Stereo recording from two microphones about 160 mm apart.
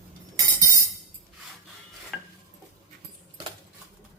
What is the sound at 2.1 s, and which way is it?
Cutlery, centre (ahead or behind).